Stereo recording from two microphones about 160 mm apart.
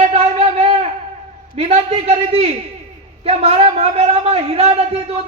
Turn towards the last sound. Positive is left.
turn(degrees=-40)  # may be behind; listen again after turning